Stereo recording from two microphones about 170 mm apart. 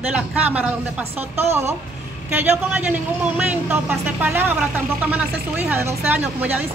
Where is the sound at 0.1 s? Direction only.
5° right (ahead or behind).